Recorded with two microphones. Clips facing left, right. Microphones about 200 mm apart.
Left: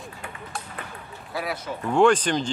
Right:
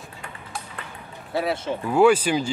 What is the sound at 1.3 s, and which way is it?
Speech, 25° right (ahead or behind).